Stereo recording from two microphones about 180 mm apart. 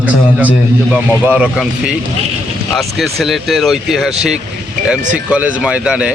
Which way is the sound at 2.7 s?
Centre (ahead or behind).